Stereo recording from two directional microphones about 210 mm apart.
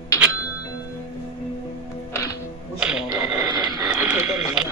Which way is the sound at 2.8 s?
5° right (ahead or behind).